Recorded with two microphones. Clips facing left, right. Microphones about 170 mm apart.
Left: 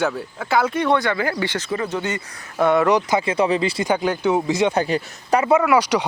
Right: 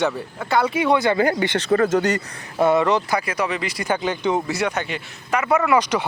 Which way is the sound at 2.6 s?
5° right (ahead or behind).